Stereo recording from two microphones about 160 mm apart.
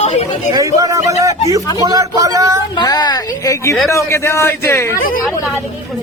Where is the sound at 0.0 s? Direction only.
45° left (ahead or behind).